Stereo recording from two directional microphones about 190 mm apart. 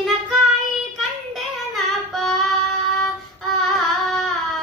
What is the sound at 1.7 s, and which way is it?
Child singing, centre (ahead or behind).